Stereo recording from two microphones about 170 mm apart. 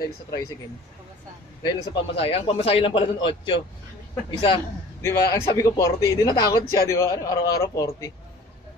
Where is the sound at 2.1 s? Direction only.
35° left (ahead or behind).